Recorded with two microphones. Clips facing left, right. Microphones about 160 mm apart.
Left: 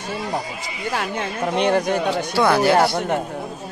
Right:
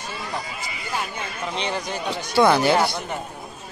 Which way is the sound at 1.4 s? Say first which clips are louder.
Left 9 dB; 55° left (ahead or behind).